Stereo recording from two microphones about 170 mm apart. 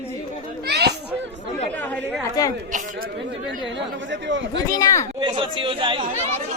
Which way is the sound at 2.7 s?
50° right (ahead or behind).